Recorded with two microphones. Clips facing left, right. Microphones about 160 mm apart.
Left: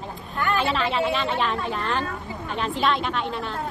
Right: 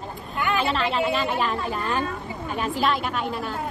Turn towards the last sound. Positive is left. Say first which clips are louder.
# even
turn(degrees=-5)  # may be behind; listen again after turning